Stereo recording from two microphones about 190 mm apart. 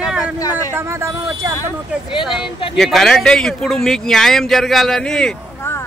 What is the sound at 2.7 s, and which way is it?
Speech, centre (ahead or behind).